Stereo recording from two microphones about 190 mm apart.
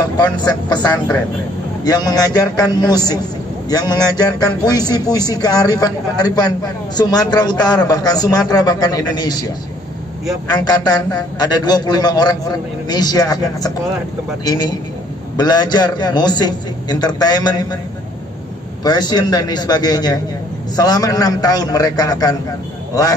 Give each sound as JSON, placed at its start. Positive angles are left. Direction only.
{"t": 0.2, "sound": "a man's voice", "side_deg": 20}
{"t": 10.5, "sound": "a man's voice", "side_deg": 20}
{"t": 18.9, "sound": "a man's voice", "side_deg": 20}